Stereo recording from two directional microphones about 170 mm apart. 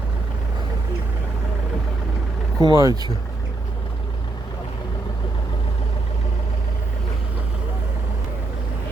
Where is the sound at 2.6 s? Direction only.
20° right (ahead or behind).